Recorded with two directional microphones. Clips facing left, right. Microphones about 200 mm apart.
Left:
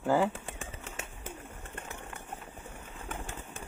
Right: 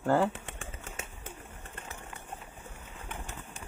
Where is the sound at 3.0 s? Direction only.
50° left (ahead or behind).